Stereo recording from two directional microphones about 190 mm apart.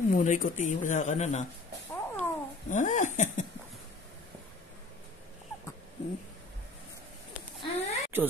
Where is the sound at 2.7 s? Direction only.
40° left (ahead or behind).